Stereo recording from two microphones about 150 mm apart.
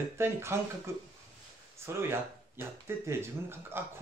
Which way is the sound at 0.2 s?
15° right (ahead or behind).